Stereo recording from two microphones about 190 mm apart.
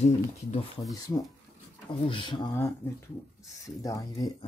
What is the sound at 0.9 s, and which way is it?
Speech, 20° left (ahead or behind).